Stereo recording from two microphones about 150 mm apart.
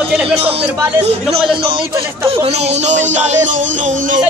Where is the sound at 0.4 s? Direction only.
40° right (ahead or behind).